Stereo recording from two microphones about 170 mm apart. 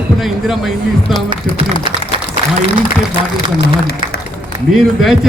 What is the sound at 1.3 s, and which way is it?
Speech, 30° right (ahead or behind).